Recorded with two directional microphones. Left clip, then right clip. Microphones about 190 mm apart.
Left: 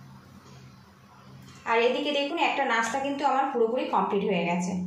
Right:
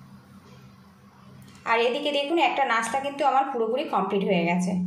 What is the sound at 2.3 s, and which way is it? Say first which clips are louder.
A woman's voice: right 4 dB; 45° right (ahead or behind).